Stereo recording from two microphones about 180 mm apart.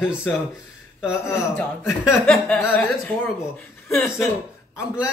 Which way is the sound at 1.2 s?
15° left (ahead or behind).